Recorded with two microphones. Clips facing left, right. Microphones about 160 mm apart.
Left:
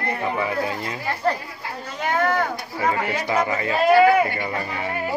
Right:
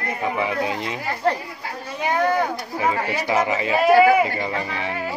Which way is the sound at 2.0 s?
15° right (ahead or behind).